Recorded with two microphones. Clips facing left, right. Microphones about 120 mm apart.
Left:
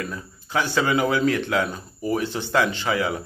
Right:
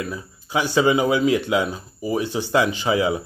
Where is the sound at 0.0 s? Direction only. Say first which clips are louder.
Right 2 dB; 10° right (ahead or behind).